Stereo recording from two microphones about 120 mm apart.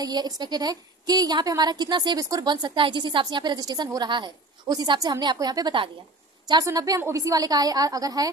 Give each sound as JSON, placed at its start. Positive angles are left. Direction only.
{"t": 0.0, "sound": "a woman's voice", "side_deg": -35}